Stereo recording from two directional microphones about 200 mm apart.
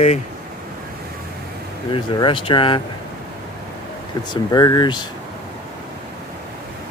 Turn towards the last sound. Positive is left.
turn(degrees=20)  # may be behind; listen again after turning